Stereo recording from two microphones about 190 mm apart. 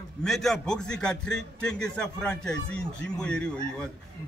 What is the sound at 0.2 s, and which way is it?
A man's voice, centre (ahead or behind).